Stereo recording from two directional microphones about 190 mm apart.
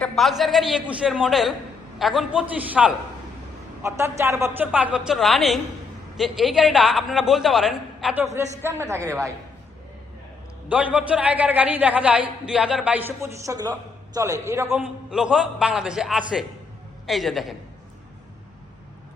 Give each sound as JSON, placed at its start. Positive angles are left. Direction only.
{"t": 0.0, "sound": "a man's voice", "side_deg": 0}
{"t": 8.4, "sound": "a man's voice", "side_deg": -15}
{"t": 10.7, "sound": "a man's voice", "side_deg": -5}